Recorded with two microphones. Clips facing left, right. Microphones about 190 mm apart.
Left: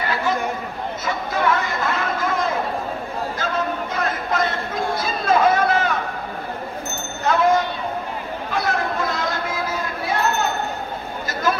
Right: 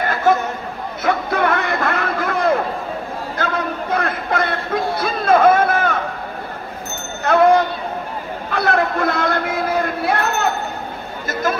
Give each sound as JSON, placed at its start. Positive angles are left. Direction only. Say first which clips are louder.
{"t": 0.0, "sound": "chatter", "louder": "right 6 dB", "side_deg": -50}
{"t": 1.0, "sound": "music", "louder": "right 4 dB", "side_deg": -60}
{"t": 7.2, "sound": "a sound", "louder": "right 5 dB", "side_deg": -60}